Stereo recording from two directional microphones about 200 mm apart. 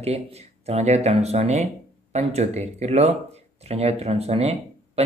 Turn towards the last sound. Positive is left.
turn(degrees=-30)  # may be behind; listen again after turning